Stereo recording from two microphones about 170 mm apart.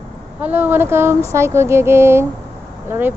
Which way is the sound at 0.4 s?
10° right (ahead or behind).